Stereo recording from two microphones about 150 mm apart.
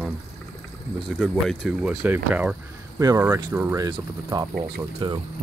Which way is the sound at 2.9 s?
20° right (ahead or behind).